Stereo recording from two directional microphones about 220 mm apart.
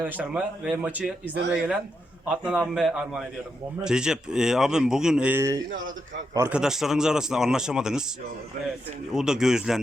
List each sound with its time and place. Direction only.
0.0 s speech: 5° right (ahead or behind)
1.3 s speech: 50° right (ahead or behind)
2.5 s speech: 5° right (ahead or behind)
9.1 s speech: centre (ahead or behind)